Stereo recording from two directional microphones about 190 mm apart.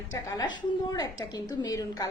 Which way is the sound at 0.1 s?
20° left (ahead or behind).